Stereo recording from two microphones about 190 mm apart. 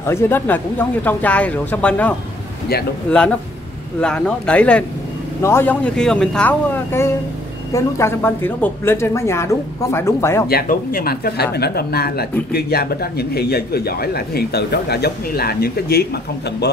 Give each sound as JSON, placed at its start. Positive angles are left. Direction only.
{"t": 0.0, "sound": "a woman's voice", "side_deg": 10}
{"t": 10.5, "sound": "speech", "side_deg": 50}